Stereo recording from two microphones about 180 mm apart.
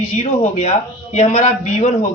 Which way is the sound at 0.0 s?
40° left (ahead or behind).